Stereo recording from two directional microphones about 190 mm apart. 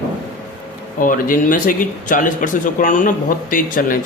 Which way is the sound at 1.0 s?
45° left (ahead or behind).